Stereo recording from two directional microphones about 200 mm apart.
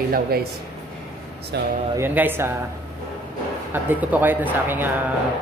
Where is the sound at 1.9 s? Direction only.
10° right (ahead or behind).